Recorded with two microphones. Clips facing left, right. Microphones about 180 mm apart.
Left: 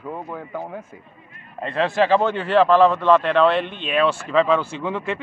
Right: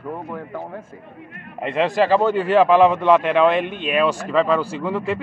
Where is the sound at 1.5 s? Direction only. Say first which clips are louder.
Right 1 dB; 15° right (ahead or behind).